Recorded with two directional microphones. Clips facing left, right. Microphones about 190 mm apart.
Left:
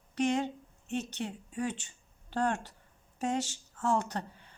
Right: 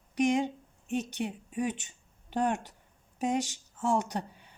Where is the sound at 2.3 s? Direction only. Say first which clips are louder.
Right 2 dB; 15° right (ahead or behind).